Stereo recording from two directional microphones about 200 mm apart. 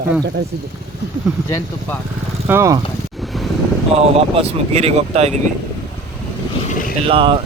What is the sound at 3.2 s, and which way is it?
Wind noise, centre (ahead or behind).